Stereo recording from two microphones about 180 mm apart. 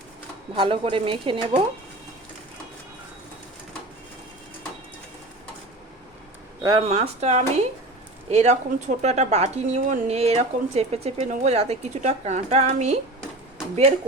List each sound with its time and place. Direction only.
0.5 s speech: 30° right (ahead or behind)
6.6 s speech: 20° right (ahead or behind)
6.8 s speech: 35° right (ahead or behind)